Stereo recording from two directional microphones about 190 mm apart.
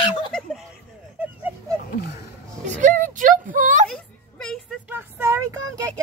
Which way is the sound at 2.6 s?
40° right (ahead or behind).